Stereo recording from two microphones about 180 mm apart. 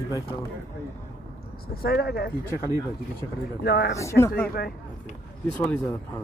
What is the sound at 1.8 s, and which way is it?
Speech, 60° left (ahead or behind).